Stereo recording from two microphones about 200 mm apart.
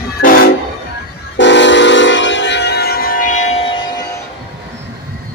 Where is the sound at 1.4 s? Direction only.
65° left (ahead or behind); by 3.8 s 30° left (ahead or behind).